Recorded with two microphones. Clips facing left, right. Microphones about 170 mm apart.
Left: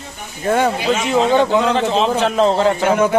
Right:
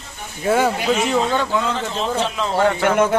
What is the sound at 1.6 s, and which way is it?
Speech, 75° left (ahead or behind).